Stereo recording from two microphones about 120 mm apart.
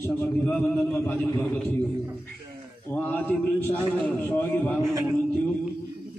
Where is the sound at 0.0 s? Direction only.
20° left (ahead or behind).